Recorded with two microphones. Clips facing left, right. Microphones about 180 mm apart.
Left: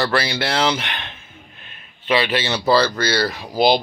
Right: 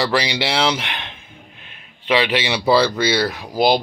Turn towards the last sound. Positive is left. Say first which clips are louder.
# right 2 dB
turn(degrees=0)  # may be behind; listen again after turning